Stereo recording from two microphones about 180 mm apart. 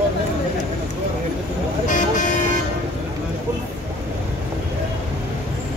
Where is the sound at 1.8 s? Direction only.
45° left (ahead or behind).